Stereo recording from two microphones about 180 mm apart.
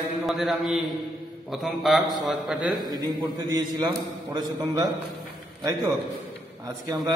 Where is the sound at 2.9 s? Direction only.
20° right (ahead or behind).